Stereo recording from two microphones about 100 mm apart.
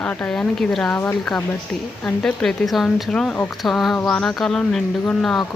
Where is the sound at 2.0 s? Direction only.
10° left (ahead or behind).